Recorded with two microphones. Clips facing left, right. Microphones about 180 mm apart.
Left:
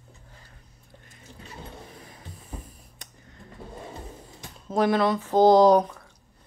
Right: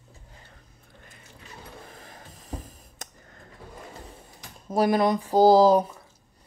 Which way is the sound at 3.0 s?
50° right (ahead or behind).